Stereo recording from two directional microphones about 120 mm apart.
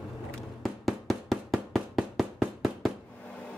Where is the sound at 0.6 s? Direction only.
Centre (ahead or behind).